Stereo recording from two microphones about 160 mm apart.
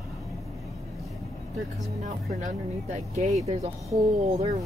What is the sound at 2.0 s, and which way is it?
Speech, 50° right (ahead or behind).